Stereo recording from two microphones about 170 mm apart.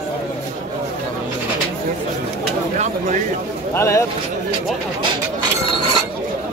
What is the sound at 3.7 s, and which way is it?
Speech, 15° left (ahead or behind).